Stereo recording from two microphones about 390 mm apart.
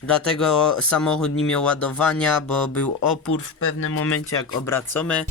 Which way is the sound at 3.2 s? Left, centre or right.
Left.